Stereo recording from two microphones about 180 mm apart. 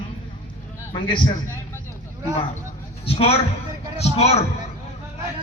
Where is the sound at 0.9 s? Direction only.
25° left (ahead or behind).